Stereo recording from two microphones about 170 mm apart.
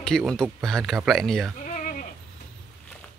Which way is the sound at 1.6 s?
50° left (ahead or behind).